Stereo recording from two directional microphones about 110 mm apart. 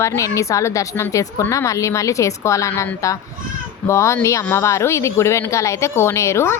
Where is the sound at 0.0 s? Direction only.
30° left (ahead or behind).